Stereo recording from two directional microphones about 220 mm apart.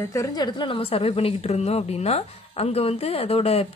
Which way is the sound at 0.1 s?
15° left (ahead or behind).